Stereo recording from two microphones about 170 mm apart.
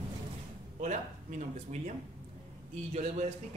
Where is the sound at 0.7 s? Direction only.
45° right (ahead or behind).